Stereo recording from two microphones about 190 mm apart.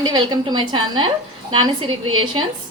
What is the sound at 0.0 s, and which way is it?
A woman's voice, 20° right (ahead or behind).